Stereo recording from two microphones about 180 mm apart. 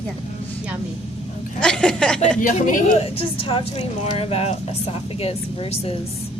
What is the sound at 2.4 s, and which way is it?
Speech, 45° left (ahead or behind).